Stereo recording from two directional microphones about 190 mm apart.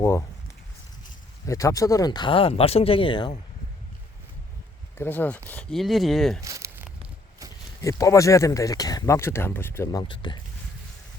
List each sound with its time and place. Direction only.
0.0 s speech: 15° left (ahead or behind)
1.5 s speech: 15° left (ahead or behind)
4.9 s speech: 10° left (ahead or behind)
6.4 s a sound: 15° right (ahead or behind)
7.8 s speech: 15° left (ahead or behind)